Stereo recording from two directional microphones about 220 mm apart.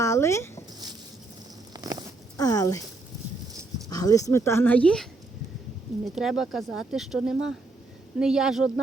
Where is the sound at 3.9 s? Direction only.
15° left (ahead or behind).